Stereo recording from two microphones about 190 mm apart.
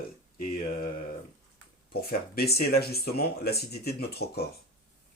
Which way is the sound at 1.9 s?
55° left (ahead or behind).